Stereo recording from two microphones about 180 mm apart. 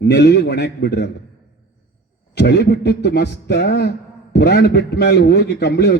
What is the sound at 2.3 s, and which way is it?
A man's voice, 65° left (ahead or behind).